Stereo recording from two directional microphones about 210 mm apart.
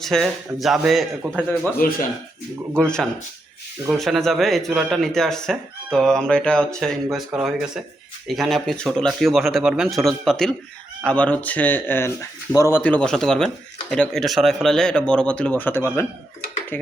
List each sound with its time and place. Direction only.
0.0 s speech: centre (ahead or behind)
2.7 s speech: 5° left (ahead or behind)